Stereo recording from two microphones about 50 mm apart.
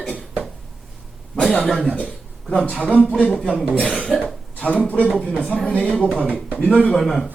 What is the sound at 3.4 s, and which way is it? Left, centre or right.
Speech, centre.